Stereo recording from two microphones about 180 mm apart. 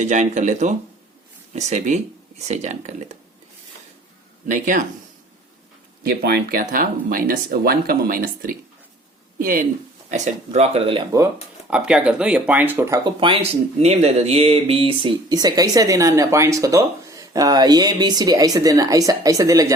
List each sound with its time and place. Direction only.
0.0 s speech: 40° right (ahead or behind)
4.4 s speech: 45° right (ahead or behind)
6.0 s speech: 60° right (ahead or behind); by 11.0 s 30° right (ahead or behind)
11.7 s speech: 5° right (ahead or behind)
13.1 s speech: 30° right (ahead or behind)